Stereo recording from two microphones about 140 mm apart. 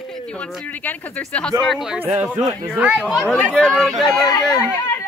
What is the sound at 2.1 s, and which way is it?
Speech, 15° right (ahead or behind).